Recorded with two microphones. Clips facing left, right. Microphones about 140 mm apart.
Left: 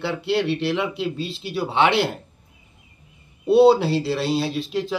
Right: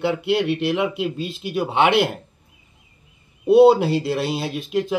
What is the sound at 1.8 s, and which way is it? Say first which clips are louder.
Speech: right 2 dB; 50° right (ahead or behind).